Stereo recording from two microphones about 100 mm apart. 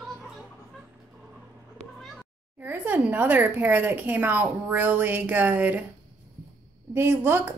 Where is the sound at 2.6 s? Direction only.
20° right (ahead or behind).